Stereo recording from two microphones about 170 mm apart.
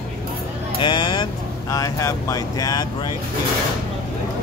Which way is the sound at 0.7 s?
25° left (ahead or behind).